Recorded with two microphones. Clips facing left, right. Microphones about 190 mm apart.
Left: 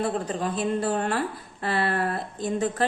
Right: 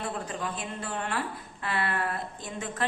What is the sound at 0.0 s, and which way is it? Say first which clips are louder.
A woman's voice: left 7 dB; 35° left (ahead or behind).